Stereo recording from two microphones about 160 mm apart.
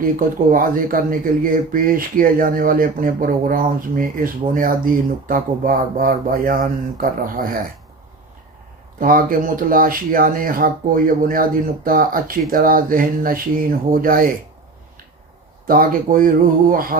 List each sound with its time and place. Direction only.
0.5 s speech: 60° right (ahead or behind)
9.0 s speech: 60° right (ahead or behind)
15.6 s speech: 65° right (ahead or behind)